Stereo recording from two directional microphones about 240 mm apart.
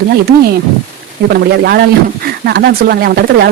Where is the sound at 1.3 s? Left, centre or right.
Right.